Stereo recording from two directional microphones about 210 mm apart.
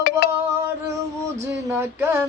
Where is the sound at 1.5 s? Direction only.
10° right (ahead or behind).